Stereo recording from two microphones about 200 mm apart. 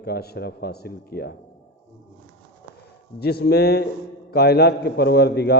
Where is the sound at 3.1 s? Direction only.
50° left (ahead or behind).